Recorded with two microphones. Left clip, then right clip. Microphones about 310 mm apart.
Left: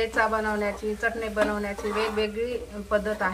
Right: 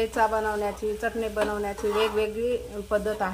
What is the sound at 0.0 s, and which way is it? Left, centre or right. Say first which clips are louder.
A woman's voice: even; right.